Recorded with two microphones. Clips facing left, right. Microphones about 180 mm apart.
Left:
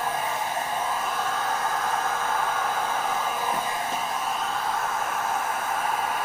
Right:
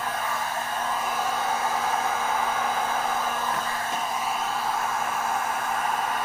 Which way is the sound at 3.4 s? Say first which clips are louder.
Left 1 dB; 15° left (ahead or behind).